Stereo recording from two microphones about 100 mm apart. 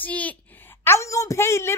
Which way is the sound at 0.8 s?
30° left (ahead or behind).